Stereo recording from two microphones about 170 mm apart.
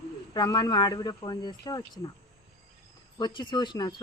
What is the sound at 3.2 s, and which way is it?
Speech, 25° left (ahead or behind).